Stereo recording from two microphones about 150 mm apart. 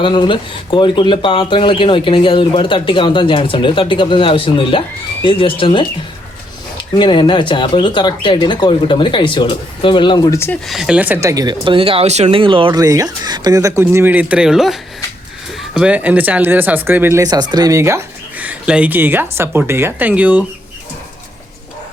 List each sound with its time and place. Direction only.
0.0 s speech: 30° left (ahead or behind)
7.0 s speech: 30° left (ahead or behind)
10.3 s speech: 15° left (ahead or behind)
10.7 s speech: 5° right (ahead or behind); by 12.8 s 35° right (ahead or behind)
12.8 s speech: 25° right (ahead or behind)